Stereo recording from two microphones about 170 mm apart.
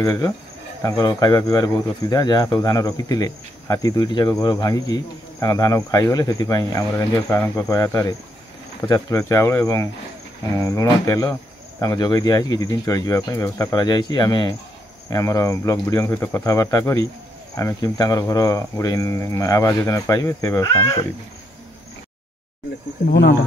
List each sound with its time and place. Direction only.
0.0 s speech: 20° left (ahead or behind)